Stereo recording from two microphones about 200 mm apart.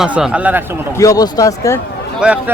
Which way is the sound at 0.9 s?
15° left (ahead or behind).